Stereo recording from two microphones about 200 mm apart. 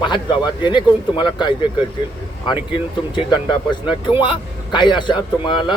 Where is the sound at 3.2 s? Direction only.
25° left (ahead or behind).